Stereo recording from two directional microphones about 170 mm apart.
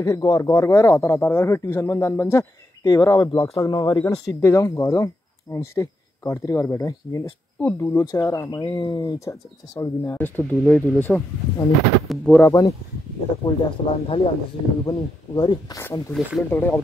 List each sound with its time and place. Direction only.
0.0 s speech: 20° left (ahead or behind); by 12.4 s 5° left (ahead or behind)
12.4 s speech: 20° left (ahead or behind)
13.5 s speech: 35° left (ahead or behind); by 16.8 s 10° left (ahead or behind)